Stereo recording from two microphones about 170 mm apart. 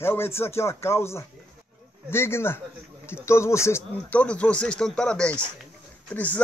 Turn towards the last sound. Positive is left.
turn(degrees=10)  # may be behind; listen again after turning